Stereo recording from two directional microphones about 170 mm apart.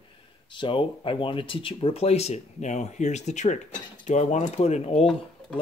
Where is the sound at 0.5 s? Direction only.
30° left (ahead or behind).